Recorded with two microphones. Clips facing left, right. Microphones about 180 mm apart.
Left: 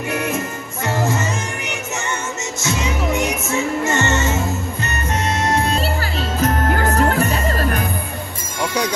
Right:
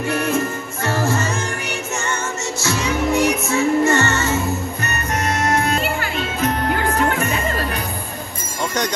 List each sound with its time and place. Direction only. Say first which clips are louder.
0.1 s music: right 2 dB; 20° left (ahead or behind)
2.6 s music: right 1 dB; 20° left (ahead or behind)
5.4 s music: even; 30° left (ahead or behind)